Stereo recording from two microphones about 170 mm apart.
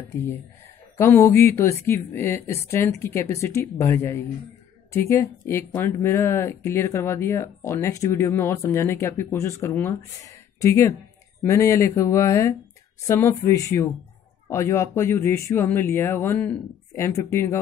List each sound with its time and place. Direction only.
0.9 s speech: 15° left (ahead or behind)